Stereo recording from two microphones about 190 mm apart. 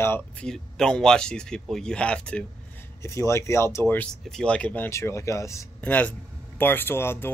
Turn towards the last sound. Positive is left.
turn(degrees=10)  # may be behind; listen again after turning